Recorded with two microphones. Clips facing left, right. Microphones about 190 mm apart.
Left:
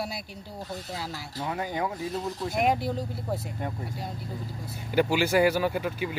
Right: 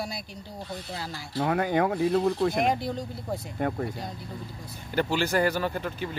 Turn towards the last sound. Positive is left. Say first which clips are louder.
# left 2 dB
turn(degrees=10)  # may be behind; listen again after turning